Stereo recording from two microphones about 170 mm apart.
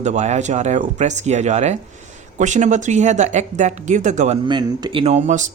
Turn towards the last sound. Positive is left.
turn(degrees=-45)  # may be behind; listen again after turning